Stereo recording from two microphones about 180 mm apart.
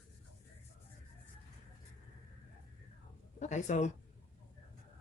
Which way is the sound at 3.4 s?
40° left (ahead or behind).